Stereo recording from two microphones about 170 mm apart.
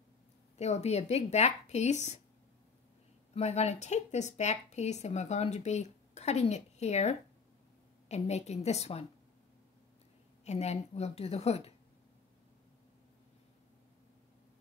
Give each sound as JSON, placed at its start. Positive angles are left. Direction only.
{"t": 0.6, "sound": "speech", "side_deg": 40}
{"t": 3.3, "sound": "speech", "side_deg": 40}
{"t": 10.4, "sound": "speech", "side_deg": 40}